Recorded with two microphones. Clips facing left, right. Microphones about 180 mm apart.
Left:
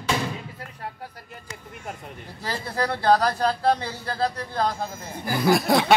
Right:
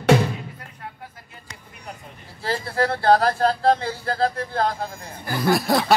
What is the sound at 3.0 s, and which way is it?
Speech, 45° right (ahead or behind).